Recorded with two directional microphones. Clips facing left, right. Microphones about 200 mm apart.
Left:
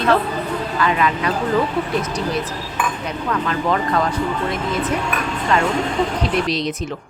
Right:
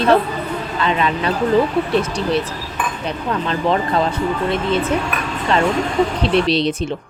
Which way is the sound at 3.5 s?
25° right (ahead or behind).